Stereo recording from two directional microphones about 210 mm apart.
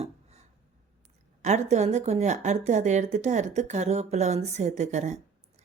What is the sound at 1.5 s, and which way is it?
A woman's voice, 35° right (ahead or behind).